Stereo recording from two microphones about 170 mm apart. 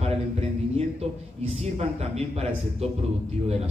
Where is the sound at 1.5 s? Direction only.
40° right (ahead or behind).